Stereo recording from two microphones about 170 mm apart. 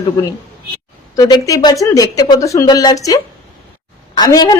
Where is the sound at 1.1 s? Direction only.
20° left (ahead or behind).